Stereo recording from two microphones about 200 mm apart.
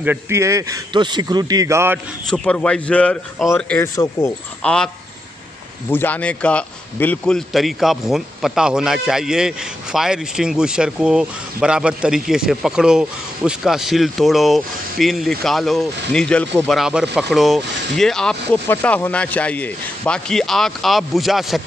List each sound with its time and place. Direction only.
0.0 s speech: 10° right (ahead or behind)
2.2 s a man's voice: 5° left (ahead or behind)
4.6 s a man's voice: 5° left (ahead or behind)